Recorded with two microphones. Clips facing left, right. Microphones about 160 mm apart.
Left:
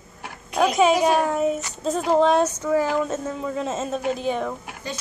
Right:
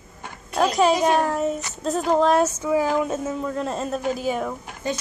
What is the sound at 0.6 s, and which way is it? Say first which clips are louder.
Speech: left 1 dB; centre (ahead or behind).